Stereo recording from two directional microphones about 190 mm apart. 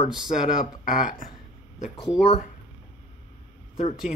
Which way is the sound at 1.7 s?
35° left (ahead or behind).